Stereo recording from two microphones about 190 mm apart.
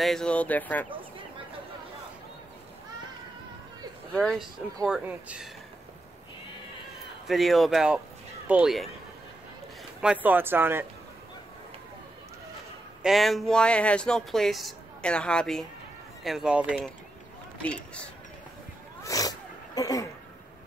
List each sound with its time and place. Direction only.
0.0 s speech: 5° left (ahead or behind)
4.1 s speech: 5° left (ahead or behind)
7.2 s speech: centre (ahead or behind)
10.0 s speech: 10° right (ahead or behind)
13.0 s speech: centre (ahead or behind)
19.0 s a sound: 20° left (ahead or behind)